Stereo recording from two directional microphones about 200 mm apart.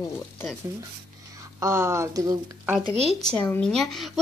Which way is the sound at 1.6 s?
15° right (ahead or behind).